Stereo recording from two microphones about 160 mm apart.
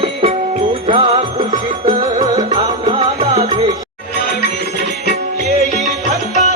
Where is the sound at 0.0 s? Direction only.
35° right (ahead or behind).